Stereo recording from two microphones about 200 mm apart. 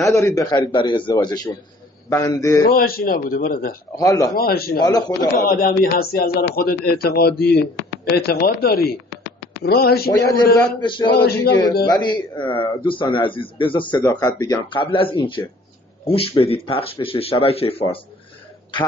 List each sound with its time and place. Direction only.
0.0 s a man's voice: 15° left (ahead or behind)
2.7 s speech: 50° left (ahead or behind)
3.9 s a man's voice: 15° left (ahead or behind)
4.4 s speech: 50° left (ahead or behind)
4.8 s speech: 20° left (ahead or behind)
5.6 s speech: 50° left (ahead or behind)
9.2 s a sound: 60° left (ahead or behind)
10.1 s speech: 15° left (ahead or behind)